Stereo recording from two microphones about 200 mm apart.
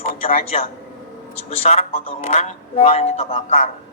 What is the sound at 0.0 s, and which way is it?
A man's voice, 30° left (ahead or behind).